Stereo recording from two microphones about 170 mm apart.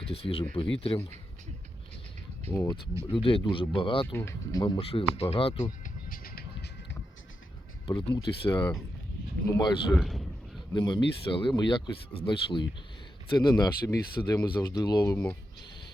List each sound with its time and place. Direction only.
0.0 s speech: 35° left (ahead or behind)
2.5 s speech: 15° left (ahead or behind)
3.1 s speech: 30° left (ahead or behind)
4.0 s speech: 15° left (ahead or behind)
4.6 s speech: 35° left (ahead or behind)
5.8 s music: 60° left (ahead or behind)
7.9 s speech: 30° left (ahead or behind)
9.9 s speech: centre (ahead or behind)
10.8 s speech: 25° left (ahead or behind)